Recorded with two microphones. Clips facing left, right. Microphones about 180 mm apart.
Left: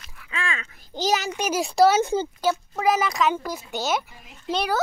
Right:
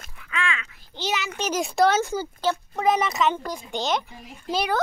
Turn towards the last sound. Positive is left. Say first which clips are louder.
# even
turn(degrees=0)  # may be behind; listen again after turning